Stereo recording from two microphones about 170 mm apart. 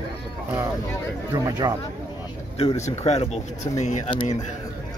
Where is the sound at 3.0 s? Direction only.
40° left (ahead or behind).